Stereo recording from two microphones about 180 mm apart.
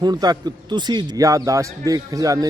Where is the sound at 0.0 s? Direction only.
20° right (ahead or behind).